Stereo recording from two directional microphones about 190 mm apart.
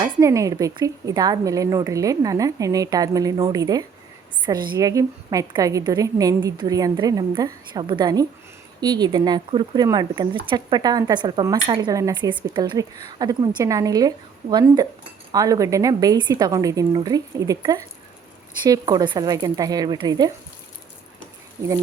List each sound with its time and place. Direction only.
0.0 s speech: 15° right (ahead or behind)
15.3 s speech: 20° right (ahead or behind)